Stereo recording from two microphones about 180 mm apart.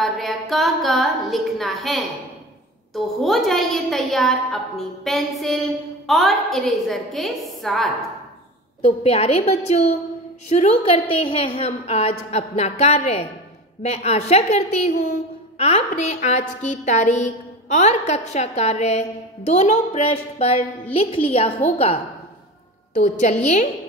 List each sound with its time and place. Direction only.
0.0 s a woman's voice: centre (ahead or behind)
8.8 s a woman's voice: 35° left (ahead or behind)